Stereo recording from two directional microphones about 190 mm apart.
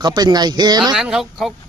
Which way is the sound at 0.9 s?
Centre (ahead or behind).